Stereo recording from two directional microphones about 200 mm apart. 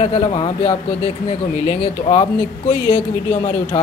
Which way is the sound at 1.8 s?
30° left (ahead or behind).